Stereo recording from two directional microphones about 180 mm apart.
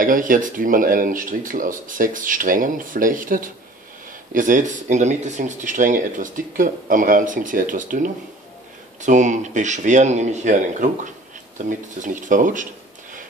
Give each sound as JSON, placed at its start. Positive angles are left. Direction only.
{"t": 0.0, "sound": "speech", "side_deg": -50}